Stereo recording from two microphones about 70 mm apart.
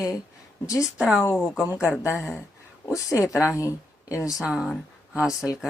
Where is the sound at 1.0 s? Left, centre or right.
Centre.